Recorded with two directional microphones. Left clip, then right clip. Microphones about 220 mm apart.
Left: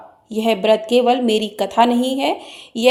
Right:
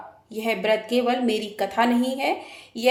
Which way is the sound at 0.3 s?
30° left (ahead or behind).